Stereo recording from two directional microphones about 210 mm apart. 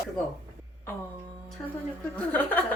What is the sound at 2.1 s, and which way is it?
Speech, 5° left (ahead or behind).